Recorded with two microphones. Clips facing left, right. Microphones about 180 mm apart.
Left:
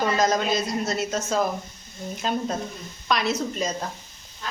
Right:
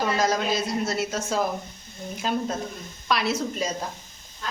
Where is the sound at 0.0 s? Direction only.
5° right (ahead or behind).